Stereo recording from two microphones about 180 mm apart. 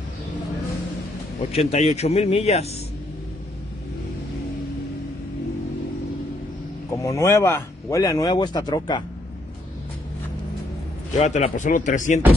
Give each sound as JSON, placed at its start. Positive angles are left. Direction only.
{"t": 1.5, "sound": "speech", "side_deg": 35}
{"t": 7.0, "sound": "speech", "side_deg": 15}
{"t": 11.1, "sound": "speech", "side_deg": 40}